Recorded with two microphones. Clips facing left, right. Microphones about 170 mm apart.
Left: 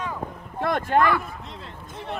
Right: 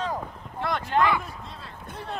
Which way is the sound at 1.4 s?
20° left (ahead or behind).